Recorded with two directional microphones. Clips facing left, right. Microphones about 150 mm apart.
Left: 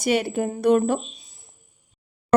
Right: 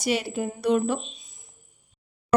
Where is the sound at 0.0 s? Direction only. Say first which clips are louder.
Left 4 dB; 55° left (ahead or behind).